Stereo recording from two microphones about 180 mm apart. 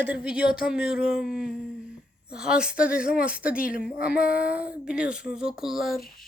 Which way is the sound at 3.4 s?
5° right (ahead or behind).